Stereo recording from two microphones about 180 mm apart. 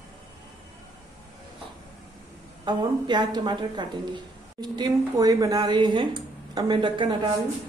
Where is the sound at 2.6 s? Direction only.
25° right (ahead or behind).